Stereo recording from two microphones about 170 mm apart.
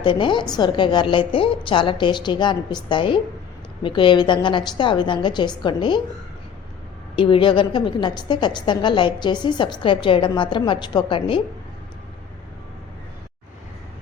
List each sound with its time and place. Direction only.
0.0 s a woman's voice: 30° left (ahead or behind)
7.2 s a woman's voice: 30° left (ahead or behind)